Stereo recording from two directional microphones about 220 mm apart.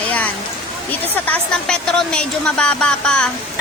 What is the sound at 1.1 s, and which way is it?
Speech, 5° left (ahead or behind).